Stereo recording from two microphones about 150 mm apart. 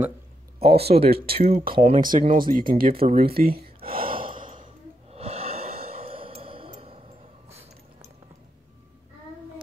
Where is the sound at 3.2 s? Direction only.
85° right.